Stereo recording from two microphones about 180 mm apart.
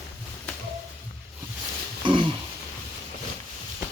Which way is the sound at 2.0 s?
25° right (ahead or behind).